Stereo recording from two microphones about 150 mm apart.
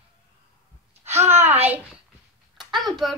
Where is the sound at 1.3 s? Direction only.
45° right (ahead or behind).